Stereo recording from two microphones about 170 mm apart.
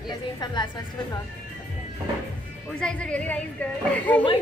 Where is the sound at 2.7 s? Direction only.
5° left (ahead or behind).